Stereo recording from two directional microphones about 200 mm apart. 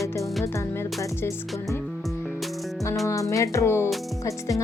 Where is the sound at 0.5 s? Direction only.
15° left (ahead or behind).